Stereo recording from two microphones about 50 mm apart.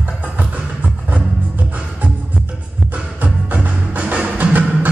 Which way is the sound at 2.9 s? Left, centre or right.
Right.